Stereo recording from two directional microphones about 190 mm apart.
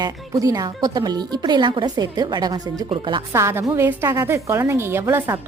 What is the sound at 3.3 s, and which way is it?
A woman's voice, 15° right (ahead or behind).